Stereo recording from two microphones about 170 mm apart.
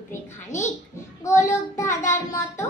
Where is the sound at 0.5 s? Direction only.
45° left (ahead or behind).